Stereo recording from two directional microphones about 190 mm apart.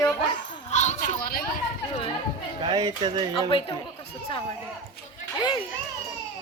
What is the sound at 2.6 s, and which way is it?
Speech, 20° right (ahead or behind).